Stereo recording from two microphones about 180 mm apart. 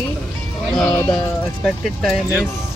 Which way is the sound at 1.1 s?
Centre (ahead or behind).